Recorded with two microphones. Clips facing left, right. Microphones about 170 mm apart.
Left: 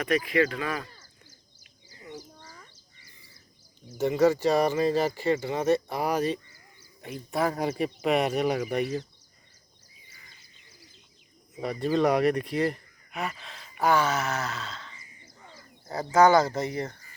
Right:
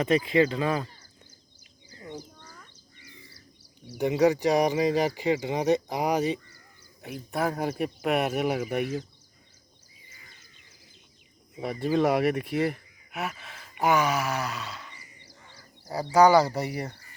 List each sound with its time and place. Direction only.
0.0 s speech: 25° right (ahead or behind)
3.0 s a sound: 75° right (ahead or behind)
3.9 s speech: 15° right (ahead or behind)
7.0 s speech: centre (ahead or behind)
11.6 s speech: 10° right (ahead or behind)
16.1 s speech: 10° right (ahead or behind)